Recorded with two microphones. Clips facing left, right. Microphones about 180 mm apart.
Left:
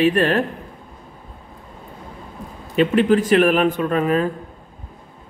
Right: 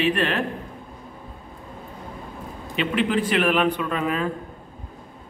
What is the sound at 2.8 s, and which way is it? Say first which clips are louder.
A man's voice: left 7 dB; 45° left (ahead or behind).